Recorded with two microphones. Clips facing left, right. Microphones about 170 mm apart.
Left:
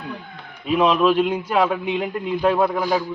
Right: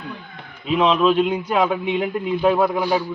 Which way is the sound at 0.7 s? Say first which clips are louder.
Even; 5° left (ahead or behind).